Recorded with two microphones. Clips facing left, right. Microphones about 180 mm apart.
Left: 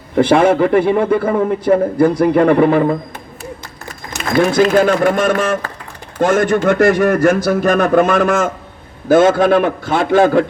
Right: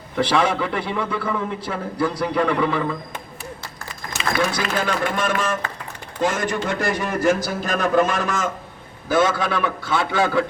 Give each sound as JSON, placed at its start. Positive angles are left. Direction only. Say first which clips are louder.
{"t": 0.2, "sound": "a man's voice", "louder": "left 9 dB", "side_deg": 50}
{"t": 4.2, "sound": "a man's voice", "louder": "left 10 dB", "side_deg": 50}